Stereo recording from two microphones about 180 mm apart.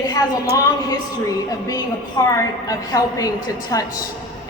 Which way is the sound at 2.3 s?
20° left (ahead or behind).